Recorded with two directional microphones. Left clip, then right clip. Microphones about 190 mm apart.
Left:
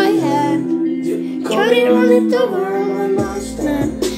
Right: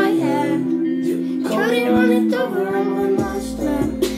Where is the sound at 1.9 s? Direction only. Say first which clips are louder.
Left 4 dB; 30° left (ahead or behind).